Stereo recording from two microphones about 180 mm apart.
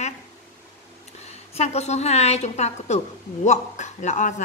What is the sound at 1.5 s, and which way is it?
A woman's voice, 35° left (ahead or behind).